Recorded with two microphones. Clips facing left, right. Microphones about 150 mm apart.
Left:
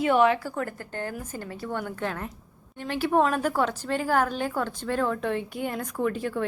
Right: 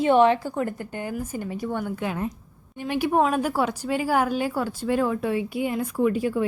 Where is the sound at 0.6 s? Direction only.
20° right (ahead or behind).